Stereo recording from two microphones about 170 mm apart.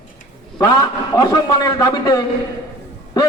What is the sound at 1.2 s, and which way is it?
A man's voice, 20° left (ahead or behind).